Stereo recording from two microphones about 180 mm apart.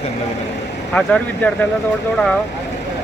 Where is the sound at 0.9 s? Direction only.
5° left (ahead or behind).